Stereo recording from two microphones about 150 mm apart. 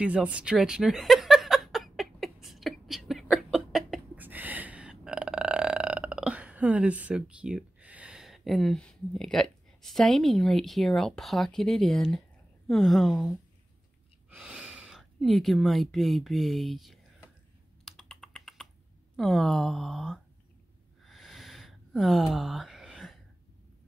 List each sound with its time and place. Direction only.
0.0 s chuckle: 10° right (ahead or behind)
12.6 s speech: centre (ahead or behind)
17.8 s computer keyboard: centre (ahead or behind)
19.1 s speech: centre (ahead or behind)
21.0 s a sound: centre (ahead or behind)